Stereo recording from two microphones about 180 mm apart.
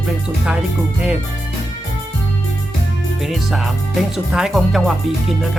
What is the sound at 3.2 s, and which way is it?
Speech, centre (ahead or behind).